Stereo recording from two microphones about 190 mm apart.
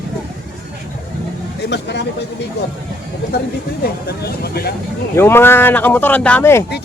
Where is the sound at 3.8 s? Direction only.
55° left (ahead or behind).